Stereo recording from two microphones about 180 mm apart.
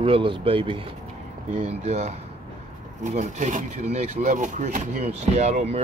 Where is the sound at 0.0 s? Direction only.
30° right (ahead or behind).